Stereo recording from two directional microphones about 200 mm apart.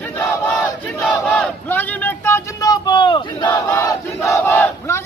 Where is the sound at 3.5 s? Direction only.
10° left (ahead or behind).